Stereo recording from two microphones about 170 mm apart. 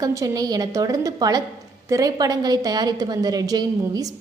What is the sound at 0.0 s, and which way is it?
A woman's voice, 20° right (ahead or behind).